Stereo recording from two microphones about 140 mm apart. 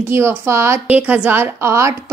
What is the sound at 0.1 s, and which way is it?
A woman's voice, 20° right (ahead or behind).